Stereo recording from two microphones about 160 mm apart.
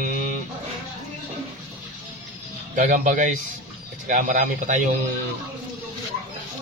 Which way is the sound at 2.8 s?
50° right (ahead or behind).